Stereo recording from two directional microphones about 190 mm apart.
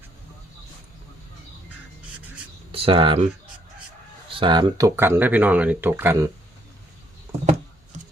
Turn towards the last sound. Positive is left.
turn(degrees=-10)  # may be behind; listen again after turning